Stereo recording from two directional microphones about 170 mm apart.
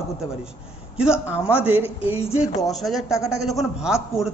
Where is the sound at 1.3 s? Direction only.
10° right (ahead or behind).